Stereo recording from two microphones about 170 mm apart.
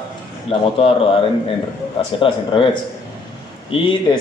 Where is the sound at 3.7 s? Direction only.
30° left (ahead or behind).